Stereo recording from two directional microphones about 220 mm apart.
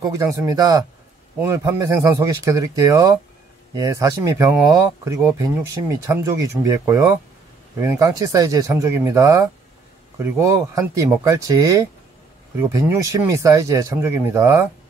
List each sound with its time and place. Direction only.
0.0 s speech: 15° right (ahead or behind)